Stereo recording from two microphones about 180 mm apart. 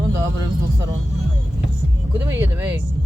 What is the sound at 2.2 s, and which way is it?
Speech, 15° right (ahead or behind).